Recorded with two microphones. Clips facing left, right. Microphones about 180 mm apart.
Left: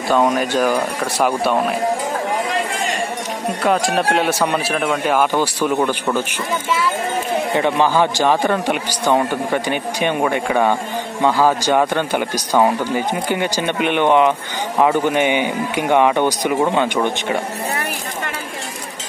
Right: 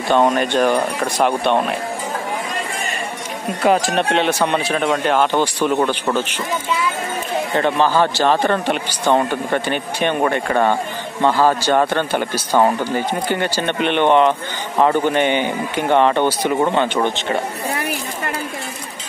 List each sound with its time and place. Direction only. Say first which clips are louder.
0.1 s speech: right 1 dB; 5° left (ahead or behind)
3.6 s a man's voice: right 1 dB; centre (ahead or behind)
7.5 s a man's voice: even; 15° left (ahead or behind)